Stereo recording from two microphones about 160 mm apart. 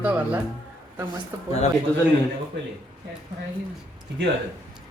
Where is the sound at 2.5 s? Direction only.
90° right.